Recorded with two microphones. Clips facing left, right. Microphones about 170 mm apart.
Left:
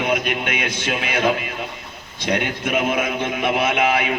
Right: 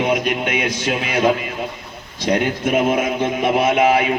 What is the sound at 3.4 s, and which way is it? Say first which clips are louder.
Speech: right 4 dB; 35° right (ahead or behind).